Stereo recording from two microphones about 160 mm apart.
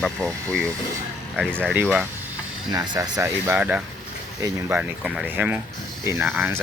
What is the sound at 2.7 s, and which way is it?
Speech, 20° right (ahead or behind).